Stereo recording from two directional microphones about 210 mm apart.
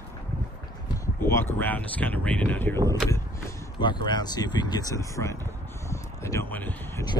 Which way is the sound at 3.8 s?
20° left (ahead or behind).